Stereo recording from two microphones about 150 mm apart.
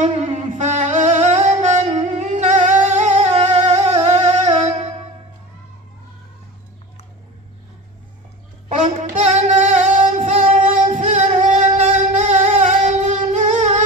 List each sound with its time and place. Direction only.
0.0 s singing: 50° right (ahead or behind)
8.6 s female singing: 50° right (ahead or behind)